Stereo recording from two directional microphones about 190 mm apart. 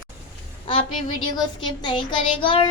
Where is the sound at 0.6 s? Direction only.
30° left (ahead or behind).